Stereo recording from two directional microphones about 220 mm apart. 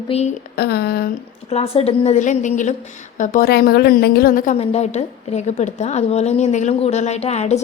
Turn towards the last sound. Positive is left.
turn(degrees=30)  # may be behind; listen again after turning